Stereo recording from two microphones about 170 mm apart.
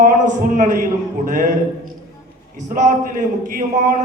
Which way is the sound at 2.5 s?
45° right (ahead or behind).